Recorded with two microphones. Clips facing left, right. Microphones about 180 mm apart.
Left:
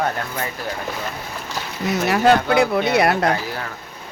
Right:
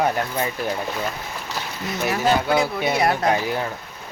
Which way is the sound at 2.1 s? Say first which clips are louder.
Left 3 dB; 70° left (ahead or behind).